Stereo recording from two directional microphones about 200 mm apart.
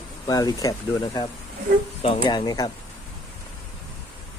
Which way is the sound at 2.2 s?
20° left (ahead or behind).